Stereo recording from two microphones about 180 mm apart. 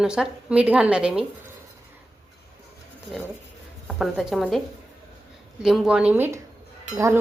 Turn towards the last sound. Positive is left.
turn(degrees=-15)  # may be behind; listen again after turning